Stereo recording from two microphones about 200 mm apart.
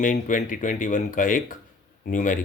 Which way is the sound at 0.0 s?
40° left (ahead or behind).